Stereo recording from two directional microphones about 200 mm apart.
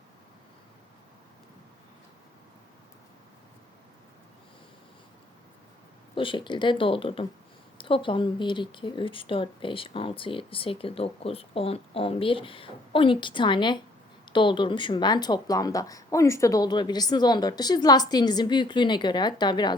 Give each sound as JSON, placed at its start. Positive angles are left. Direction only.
{"t": 6.1, "sound": "speech", "side_deg": 25}